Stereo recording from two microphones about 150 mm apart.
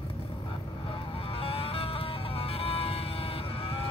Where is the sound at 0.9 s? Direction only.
40° left (ahead or behind).